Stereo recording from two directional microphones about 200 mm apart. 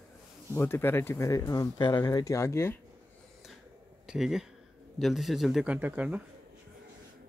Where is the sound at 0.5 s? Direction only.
10° left (ahead or behind).